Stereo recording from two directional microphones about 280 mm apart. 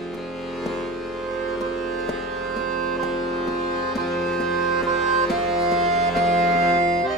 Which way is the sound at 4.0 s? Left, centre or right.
Centre.